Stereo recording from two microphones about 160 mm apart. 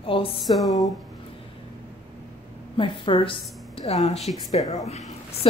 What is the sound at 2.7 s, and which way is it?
A woman's voice, 30° left (ahead or behind).